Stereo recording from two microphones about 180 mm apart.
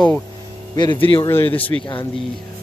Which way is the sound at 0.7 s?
25° left (ahead or behind).